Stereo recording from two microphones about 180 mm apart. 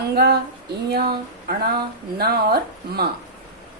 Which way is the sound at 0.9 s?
60° right (ahead or behind).